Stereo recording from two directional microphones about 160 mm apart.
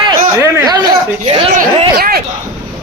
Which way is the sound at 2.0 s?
70° right (ahead or behind).